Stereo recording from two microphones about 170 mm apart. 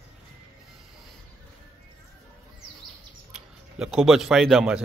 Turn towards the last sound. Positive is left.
turn(degrees=-5)  # may be behind; listen again after turning